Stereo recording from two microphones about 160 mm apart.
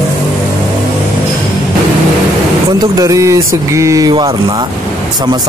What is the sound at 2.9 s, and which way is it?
Speech, 20° right (ahead or behind).